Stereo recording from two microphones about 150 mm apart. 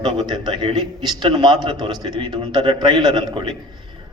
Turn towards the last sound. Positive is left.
turn(degrees=-30)  # may be behind; listen again after turning